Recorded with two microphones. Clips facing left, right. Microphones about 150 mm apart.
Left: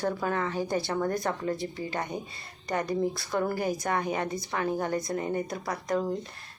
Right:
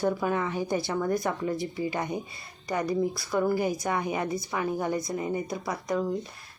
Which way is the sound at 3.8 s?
15° right (ahead or behind).